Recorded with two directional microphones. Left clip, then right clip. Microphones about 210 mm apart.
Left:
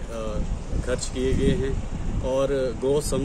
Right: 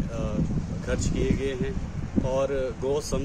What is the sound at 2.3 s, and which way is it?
Speech, 5° right (ahead or behind).